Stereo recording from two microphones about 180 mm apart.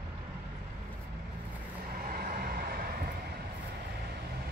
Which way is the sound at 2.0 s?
55° right (ahead or behind).